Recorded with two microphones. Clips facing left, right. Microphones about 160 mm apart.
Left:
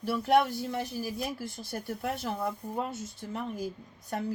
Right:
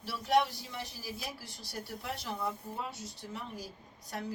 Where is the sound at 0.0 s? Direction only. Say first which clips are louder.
Left 4 dB; 55° left (ahead or behind).